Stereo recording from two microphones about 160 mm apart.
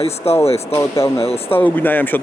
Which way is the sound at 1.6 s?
10° left (ahead or behind).